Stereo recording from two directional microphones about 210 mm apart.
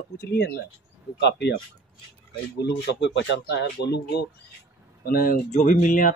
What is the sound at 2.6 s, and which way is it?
Speech, 55° left (ahead or behind).